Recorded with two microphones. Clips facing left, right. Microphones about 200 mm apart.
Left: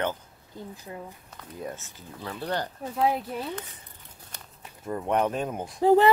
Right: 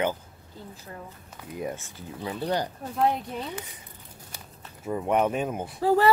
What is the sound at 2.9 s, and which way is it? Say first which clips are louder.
Speech: even; 5° left (ahead or behind).